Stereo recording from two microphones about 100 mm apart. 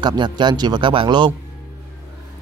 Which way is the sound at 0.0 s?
45° right (ahead or behind).